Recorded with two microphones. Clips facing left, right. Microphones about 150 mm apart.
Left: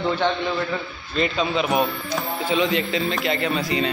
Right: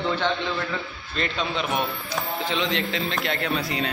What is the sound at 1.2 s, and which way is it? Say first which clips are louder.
A man's voice: left 5 dB; 5° left (ahead or behind).